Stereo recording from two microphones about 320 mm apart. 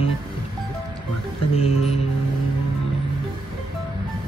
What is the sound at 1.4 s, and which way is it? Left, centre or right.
Music, centre.